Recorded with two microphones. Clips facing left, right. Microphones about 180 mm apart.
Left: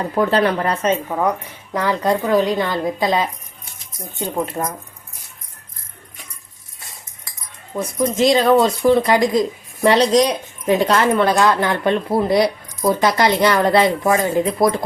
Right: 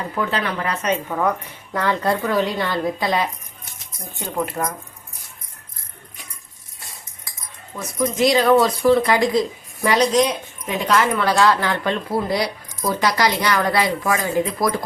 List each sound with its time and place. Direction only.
0.2 s speech: 40° left (ahead or behind)
1.7 s speech: 15° left (ahead or behind)
4.6 s speech: 20° left (ahead or behind)
7.8 s speech: 25° left (ahead or behind)